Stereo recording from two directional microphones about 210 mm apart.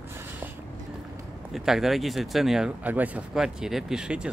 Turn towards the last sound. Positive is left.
turn(degrees=-5)  # may be behind; listen again after turning